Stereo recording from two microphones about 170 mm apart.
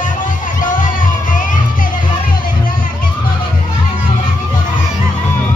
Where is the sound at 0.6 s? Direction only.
50° left (ahead or behind).